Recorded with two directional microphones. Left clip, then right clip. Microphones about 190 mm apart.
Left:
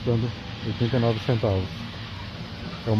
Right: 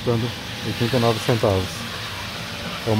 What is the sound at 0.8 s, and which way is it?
Speech, 25° right (ahead or behind).